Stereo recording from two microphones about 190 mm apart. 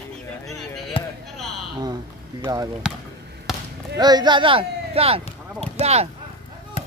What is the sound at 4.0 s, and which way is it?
Speech, 20° right (ahead or behind).